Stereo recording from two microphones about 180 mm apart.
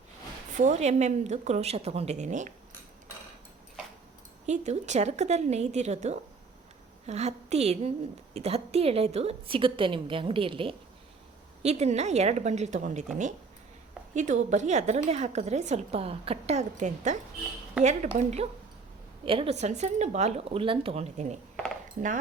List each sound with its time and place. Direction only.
0.6 s a woman's voice: 40° right (ahead or behind)
4.4 s a woman's voice: 40° right (ahead or behind)
14.1 s a woman's voice: 40° right (ahead or behind)
17.8 s speech: 5° right (ahead or behind)
18.2 s a woman's voice: 35° right (ahead or behind)